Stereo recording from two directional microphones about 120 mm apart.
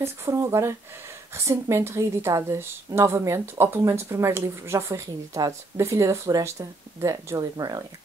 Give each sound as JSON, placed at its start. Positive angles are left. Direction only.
{"t": 0.0, "sound": "a woman's voice", "side_deg": -25}